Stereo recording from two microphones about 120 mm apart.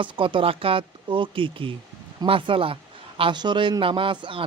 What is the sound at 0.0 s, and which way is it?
A man's voice, 45° right (ahead or behind).